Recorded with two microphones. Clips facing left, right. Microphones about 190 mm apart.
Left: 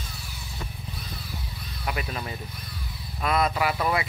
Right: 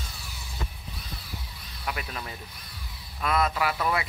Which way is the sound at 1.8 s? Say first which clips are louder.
Left 3 dB; 10° left (ahead or behind).